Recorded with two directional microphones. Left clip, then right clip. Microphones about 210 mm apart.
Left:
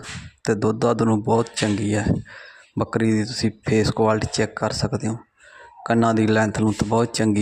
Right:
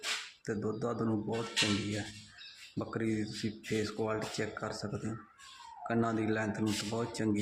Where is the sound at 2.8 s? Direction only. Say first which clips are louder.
Left 14 dB; 40° left (ahead or behind).